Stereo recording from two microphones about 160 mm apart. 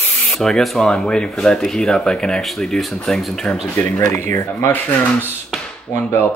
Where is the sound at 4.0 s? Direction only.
15° left (ahead or behind).